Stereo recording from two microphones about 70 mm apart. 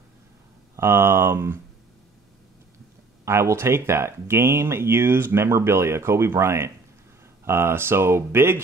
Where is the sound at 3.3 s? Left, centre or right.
Right.